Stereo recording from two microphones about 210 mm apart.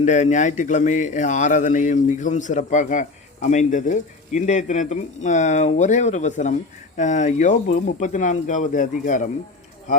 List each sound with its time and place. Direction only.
0.0 s speech: 35° left (ahead or behind)